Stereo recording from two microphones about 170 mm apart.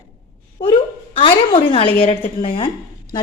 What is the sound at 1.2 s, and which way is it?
A woman's voice, 30° left (ahead or behind).